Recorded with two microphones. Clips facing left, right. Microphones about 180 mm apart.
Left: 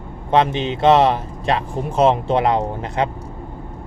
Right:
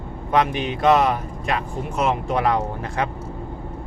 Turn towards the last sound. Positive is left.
turn(degrees=25)  # may be behind; listen again after turning